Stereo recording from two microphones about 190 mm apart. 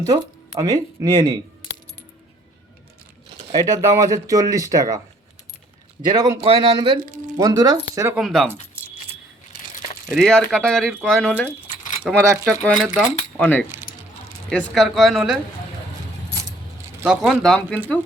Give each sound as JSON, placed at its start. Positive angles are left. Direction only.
{"t": 0.5, "sound": "speech", "side_deg": -20}
{"t": 3.5, "sound": "speech", "side_deg": -15}
{"t": 6.1, "sound": "speech", "side_deg": -20}
{"t": 7.0, "sound": "speech", "side_deg": -45}
{"t": 7.3, "sound": "speech", "side_deg": -20}
{"t": 8.2, "sound": "speech", "side_deg": 0}
{"t": 8.8, "sound": "keys jangling", "side_deg": -5}
{"t": 10.1, "sound": "speech", "side_deg": 0}
{"t": 17.0, "sound": "speech", "side_deg": -5}